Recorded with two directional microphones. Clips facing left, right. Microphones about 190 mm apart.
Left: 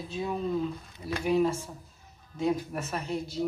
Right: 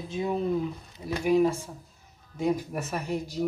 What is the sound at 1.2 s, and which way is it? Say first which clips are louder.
Speech: right 3 dB; 10° right (ahead or behind).